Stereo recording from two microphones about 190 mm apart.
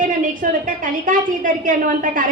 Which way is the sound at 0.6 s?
45° right (ahead or behind).